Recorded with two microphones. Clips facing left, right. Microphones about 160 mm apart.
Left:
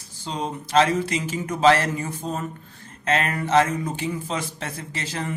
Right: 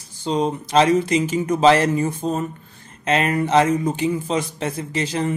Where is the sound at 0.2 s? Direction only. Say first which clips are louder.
Right 8 dB; 20° right (ahead or behind).